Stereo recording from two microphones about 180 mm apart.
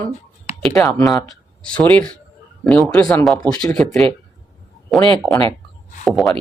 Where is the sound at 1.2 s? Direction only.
5° left (ahead or behind).